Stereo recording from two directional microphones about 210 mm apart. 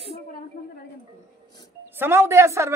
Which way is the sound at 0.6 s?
40° left (ahead or behind).